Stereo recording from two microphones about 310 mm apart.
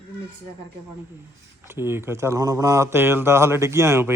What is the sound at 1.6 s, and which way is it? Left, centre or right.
Speech, centre.